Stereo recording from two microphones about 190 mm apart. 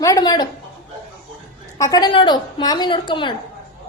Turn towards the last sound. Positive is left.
turn(degrees=25)  # may be behind; listen again after turning